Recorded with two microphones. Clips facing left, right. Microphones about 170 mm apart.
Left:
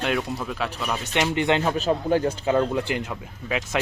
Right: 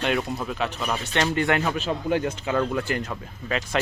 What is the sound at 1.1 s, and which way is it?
Speech, 15° left (ahead or behind).